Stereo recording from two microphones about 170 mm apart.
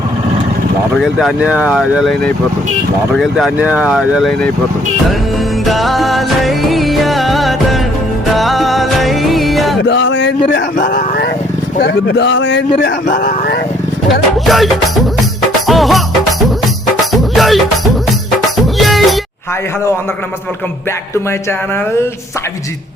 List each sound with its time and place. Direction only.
0.9 s speech: centre (ahead or behind)
5.6 s music: centre (ahead or behind)
9.8 s a sound: 90° left
10.8 s a sound: 55° left (ahead or behind)
11.8 s speech: 80° left
13.1 s speech: 55° left (ahead or behind)
14.1 s speech: centre (ahead or behind)
15.4 s music: centre (ahead or behind)
17.1 s music: centre (ahead or behind)
18.8 s music: centre (ahead or behind)